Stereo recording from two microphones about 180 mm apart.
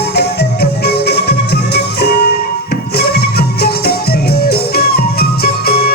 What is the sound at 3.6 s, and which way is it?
Music, 60° left (ahead or behind).